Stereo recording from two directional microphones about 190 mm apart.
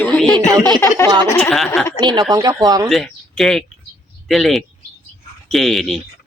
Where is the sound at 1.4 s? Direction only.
Centre (ahead or behind).